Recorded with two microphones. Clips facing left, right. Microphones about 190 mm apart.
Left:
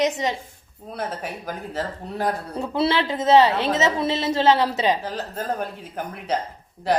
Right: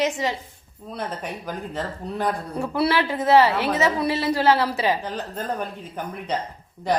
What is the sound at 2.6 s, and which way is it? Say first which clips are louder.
A woman's voice: even; 20° left (ahead or behind).